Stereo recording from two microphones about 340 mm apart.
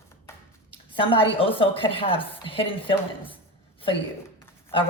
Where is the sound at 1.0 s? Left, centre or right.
Centre.